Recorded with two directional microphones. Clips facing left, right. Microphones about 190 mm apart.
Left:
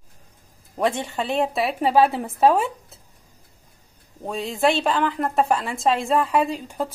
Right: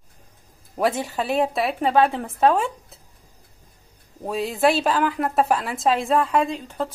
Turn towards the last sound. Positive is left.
turn(degrees=10)  # may be behind; listen again after turning